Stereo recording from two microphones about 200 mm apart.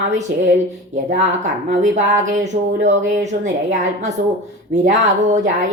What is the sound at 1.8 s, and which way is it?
A woman's voice, 40° right (ahead or behind).